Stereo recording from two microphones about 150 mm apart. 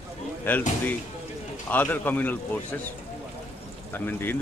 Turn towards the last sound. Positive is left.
turn(degrees=15)  # may be behind; listen again after turning